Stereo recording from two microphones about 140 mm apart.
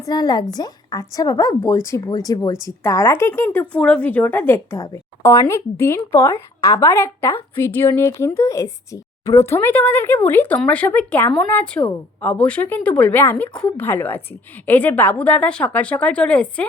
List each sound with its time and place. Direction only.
0.0 s speech: 30° left (ahead or behind); by 16.6 s 10° left (ahead or behind)